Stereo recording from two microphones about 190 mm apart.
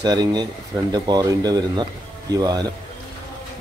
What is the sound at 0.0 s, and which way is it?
A man's voice, 20° right (ahead or behind).